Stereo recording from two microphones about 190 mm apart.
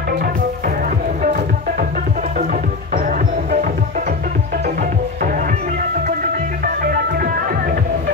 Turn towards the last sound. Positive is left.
turn(degrees=-50)  # may be behind; listen again after turning